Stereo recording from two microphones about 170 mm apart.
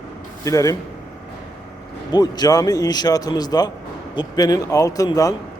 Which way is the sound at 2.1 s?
25° left (ahead or behind).